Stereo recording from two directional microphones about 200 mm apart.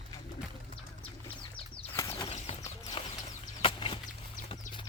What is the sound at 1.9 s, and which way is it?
Bird flight, 15° left (ahead or behind).